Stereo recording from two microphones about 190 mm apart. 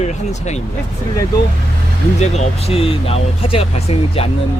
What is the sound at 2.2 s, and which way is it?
Speech, 35° left (ahead or behind).